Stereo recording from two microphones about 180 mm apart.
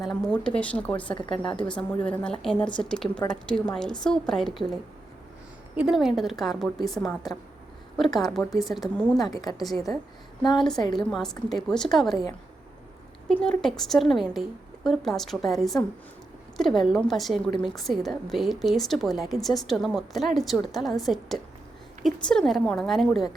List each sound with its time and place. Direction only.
0.0 s a woman's voice: centre (ahead or behind)
8.0 s a woman's voice: centre (ahead or behind)
9.3 s a woman's voice: 20° left (ahead or behind)
9.6 s a woman's voice: centre (ahead or behind)
13.2 s a woman's voice: 5° left (ahead or behind)